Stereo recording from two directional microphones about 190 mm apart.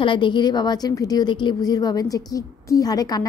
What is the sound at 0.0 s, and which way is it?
A woman's voice, 25° left (ahead or behind).